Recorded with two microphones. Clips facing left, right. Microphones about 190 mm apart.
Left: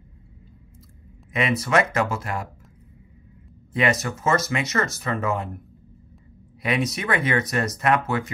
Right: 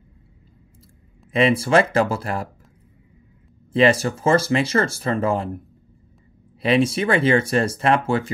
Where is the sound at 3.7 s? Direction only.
30° right (ahead or behind).